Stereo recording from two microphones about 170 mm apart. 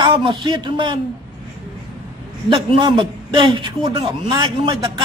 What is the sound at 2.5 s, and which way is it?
A man's voice, 30° right (ahead or behind).